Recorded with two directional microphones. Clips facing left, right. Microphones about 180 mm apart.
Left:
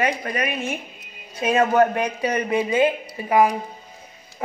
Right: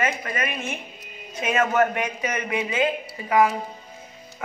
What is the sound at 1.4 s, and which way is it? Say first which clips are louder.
A woman's voice: left 4 dB; 30° left (ahead or behind).